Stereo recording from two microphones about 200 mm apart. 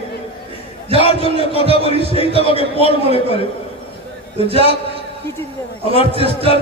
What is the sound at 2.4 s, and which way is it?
Speech, 30° left (ahead or behind).